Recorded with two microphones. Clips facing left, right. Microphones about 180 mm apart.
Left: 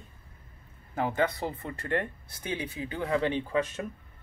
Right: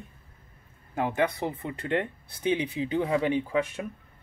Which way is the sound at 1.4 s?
20° right (ahead or behind).